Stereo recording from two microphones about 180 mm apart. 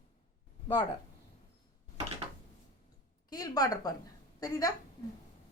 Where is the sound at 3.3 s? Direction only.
20° left (ahead or behind).